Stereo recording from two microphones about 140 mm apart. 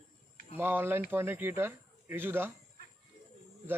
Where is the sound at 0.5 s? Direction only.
15° right (ahead or behind).